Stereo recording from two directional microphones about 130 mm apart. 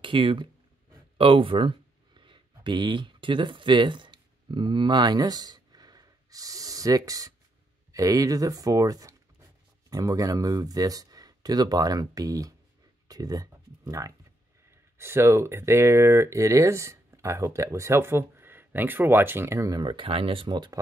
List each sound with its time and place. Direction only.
0.0 s speech: 40° right (ahead or behind)